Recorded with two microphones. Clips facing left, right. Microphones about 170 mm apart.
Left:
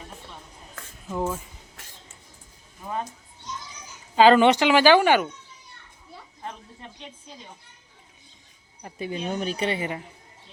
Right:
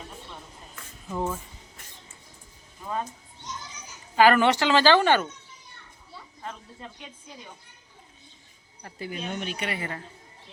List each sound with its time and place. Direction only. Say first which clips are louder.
1.1 s speech: left 2 dB; 5° left (ahead or behind)
4.1 s speech: left 4 dB; 20° left (ahead or behind)
8.8 s a woman's voice: left 4 dB; 20° left (ahead or behind)
9.3 s speech: left 5 dB; 40° left (ahead or behind)
9.6 s a woman's voice: left 5 dB; 20° left (ahead or behind)